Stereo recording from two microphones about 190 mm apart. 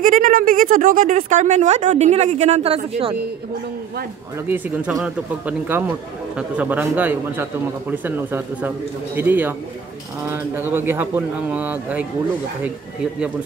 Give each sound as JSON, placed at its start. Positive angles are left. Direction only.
{"t": 0.0, "sound": "speech", "side_deg": -45}
{"t": 4.5, "sound": "speech", "side_deg": -10}